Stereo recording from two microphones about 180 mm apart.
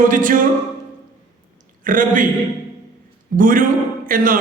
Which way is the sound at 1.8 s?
50° right (ahead or behind).